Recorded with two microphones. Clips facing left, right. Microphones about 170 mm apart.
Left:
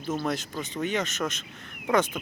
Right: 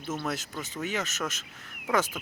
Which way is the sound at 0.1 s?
5° right (ahead or behind).